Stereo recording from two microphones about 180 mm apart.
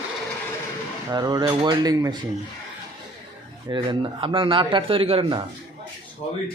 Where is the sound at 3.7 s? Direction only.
25° right (ahead or behind).